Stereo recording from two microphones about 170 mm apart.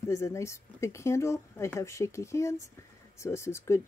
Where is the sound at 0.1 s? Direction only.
15° left (ahead or behind).